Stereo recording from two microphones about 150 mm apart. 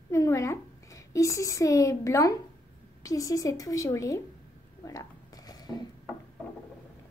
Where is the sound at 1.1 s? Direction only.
20° left (ahead or behind).